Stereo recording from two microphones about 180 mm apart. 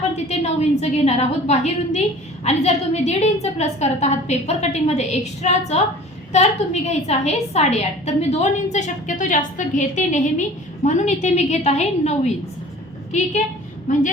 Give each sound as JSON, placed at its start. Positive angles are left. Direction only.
{"t": 0.3, "sound": "a woman's voice", "side_deg": 35}
{"t": 6.8, "sound": "a woman's voice", "side_deg": 40}